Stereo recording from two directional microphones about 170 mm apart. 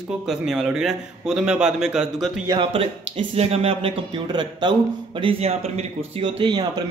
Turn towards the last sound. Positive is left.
turn(degrees=-25)  # may be behind; listen again after turning